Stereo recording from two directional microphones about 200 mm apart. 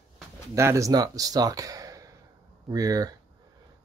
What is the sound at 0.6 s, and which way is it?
Speech, 15° right (ahead or behind).